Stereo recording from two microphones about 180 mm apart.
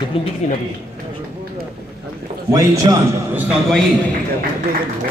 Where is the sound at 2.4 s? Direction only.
20° right (ahead or behind).